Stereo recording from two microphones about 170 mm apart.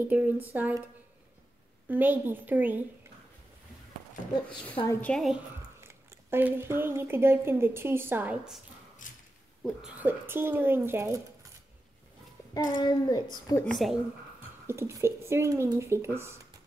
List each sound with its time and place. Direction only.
0.0 s speech: 10° right (ahead or behind)
1.9 s speech: 10° right (ahead or behind)
5.0 s a woman's voice: centre (ahead or behind)
5.8 s a woman's voice: 15° right (ahead or behind)
9.9 s speech: 10° right (ahead or behind)
12.5 s a child's voice: 25° left (ahead or behind)
13.7 s a woman's voice: centre (ahead or behind)
14.7 s speech: 15° right (ahead or behind)